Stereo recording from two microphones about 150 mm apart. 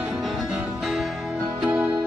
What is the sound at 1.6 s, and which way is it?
Music, 10° right (ahead or behind).